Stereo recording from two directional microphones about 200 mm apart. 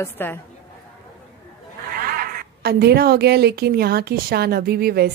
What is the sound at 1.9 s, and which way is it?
A woman's voice, 45° right (ahead or behind).